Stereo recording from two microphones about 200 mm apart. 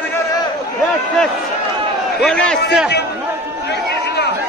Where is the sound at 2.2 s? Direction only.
5° left (ahead or behind).